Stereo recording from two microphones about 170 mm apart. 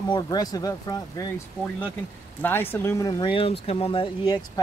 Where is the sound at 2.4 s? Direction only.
10° left (ahead or behind).